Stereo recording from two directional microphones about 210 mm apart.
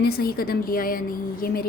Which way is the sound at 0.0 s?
45° left (ahead or behind).